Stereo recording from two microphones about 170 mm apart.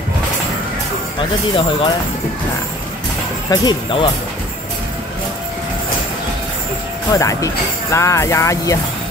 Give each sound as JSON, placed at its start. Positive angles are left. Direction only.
{"t": 1.5, "sound": "speech", "side_deg": 30}
{"t": 3.4, "sound": "speech", "side_deg": 25}
{"t": 7.2, "sound": "speech", "side_deg": 20}